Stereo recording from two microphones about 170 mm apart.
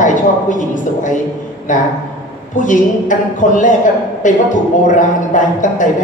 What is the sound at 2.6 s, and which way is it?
Speech, 50° left (ahead or behind).